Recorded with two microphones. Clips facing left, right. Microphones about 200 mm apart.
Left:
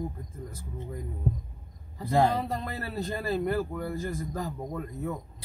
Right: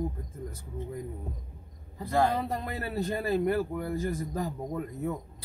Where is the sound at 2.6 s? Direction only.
15° right (ahead or behind).